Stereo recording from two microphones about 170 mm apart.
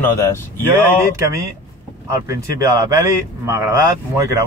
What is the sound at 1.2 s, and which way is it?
Speech, 20° right (ahead or behind).